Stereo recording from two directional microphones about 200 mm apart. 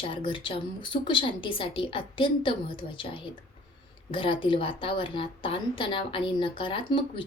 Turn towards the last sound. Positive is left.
turn(degrees=25)  # may be behind; listen again after turning